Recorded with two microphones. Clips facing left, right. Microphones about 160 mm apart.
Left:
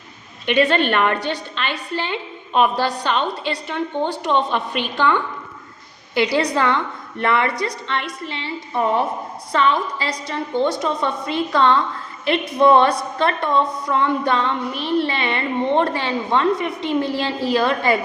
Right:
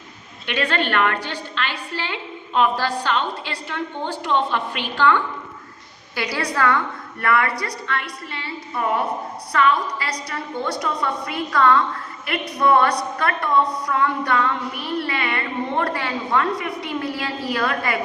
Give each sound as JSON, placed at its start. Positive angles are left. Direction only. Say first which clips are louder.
{"t": 0.4, "sound": "a woman's voice", "louder": "left 6 dB", "side_deg": 15}